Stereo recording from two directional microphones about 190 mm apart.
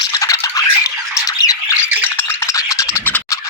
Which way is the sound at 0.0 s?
20° left (ahead or behind).